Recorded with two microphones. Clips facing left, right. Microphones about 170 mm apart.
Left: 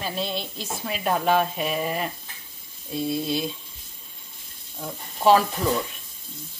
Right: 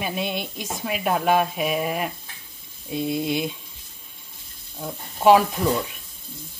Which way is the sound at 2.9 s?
20° right (ahead or behind).